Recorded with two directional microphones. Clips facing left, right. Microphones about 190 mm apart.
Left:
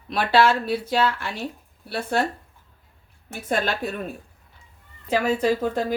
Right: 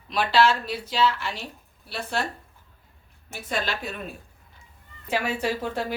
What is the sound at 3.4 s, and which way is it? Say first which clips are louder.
Speech: left 5 dB; 50° left (ahead or behind).